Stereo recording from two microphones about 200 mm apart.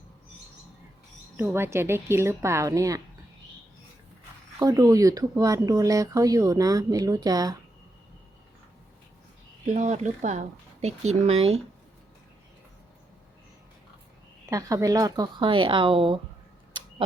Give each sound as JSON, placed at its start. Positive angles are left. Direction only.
{"t": 1.4, "sound": "speech", "side_deg": -10}
{"t": 4.6, "sound": "speech", "side_deg": -15}
{"t": 9.6, "sound": "speech", "side_deg": -35}
{"t": 14.5, "sound": "speech", "side_deg": -15}
{"t": 16.7, "sound": "a sound", "side_deg": -25}